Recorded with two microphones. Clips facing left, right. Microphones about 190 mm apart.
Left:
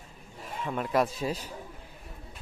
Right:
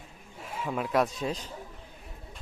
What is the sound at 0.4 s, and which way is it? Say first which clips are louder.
A man's voice: right 1 dB; centre (ahead or behind).